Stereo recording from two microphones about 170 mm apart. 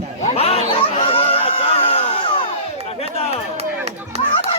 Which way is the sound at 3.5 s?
35° right (ahead or behind).